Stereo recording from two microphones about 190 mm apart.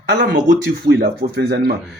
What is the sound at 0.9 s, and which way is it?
Speech, 55° right (ahead or behind).